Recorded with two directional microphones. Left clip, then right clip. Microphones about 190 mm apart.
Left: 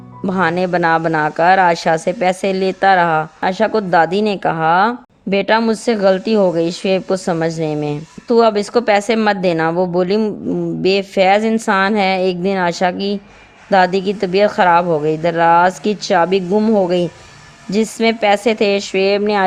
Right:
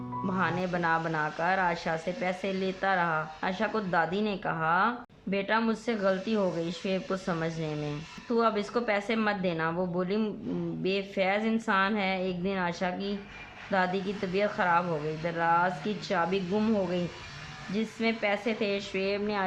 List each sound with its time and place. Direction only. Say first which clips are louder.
0.3 s speech: left 15 dB; 50° left (ahead or behind)